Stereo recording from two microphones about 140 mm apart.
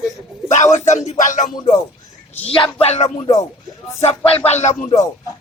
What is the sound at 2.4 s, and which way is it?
Speech, 40° left (ahead or behind).